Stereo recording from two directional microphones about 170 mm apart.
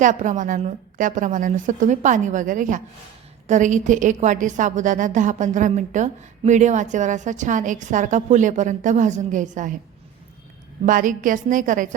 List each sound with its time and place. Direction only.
0.0 s a woman's voice: 45° right (ahead or behind)
10.8 s a woman's voice: 50° right (ahead or behind)